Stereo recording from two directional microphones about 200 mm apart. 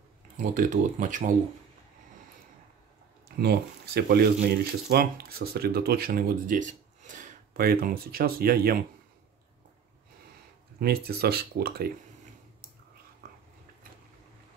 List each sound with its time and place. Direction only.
0.4 s speech: 40° right (ahead or behind)
3.3 s speech: 50° right (ahead or behind)
10.8 s speech: 50° right (ahead or behind)